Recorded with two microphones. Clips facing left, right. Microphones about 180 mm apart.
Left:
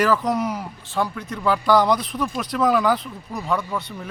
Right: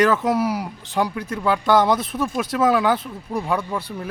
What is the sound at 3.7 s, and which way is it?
Speech, 30° right (ahead or behind).